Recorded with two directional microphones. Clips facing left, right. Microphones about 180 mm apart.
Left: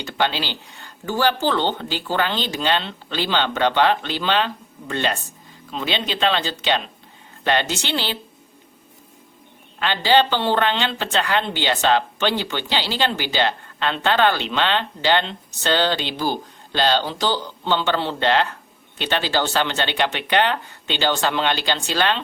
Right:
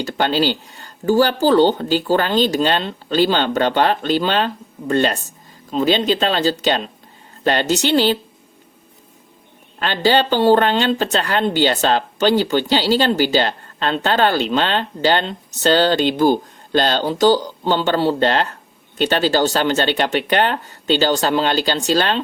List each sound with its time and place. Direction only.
0.0 s speech: 40° right (ahead or behind)
9.8 s speech: 45° right (ahead or behind)